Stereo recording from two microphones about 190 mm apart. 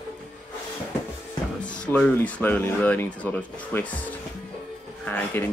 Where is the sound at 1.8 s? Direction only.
5° left (ahead or behind).